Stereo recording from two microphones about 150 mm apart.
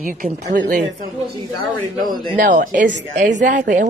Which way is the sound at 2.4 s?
60° right (ahead or behind).